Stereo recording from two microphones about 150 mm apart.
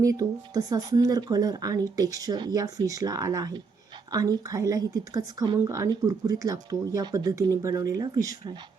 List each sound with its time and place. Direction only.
0.0 s speech: 25° right (ahead or behind)